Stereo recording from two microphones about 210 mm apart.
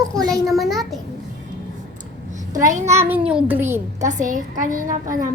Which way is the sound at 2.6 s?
35° right (ahead or behind).